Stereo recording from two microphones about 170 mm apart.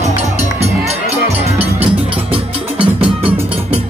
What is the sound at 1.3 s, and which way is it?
Music, 35° right (ahead or behind).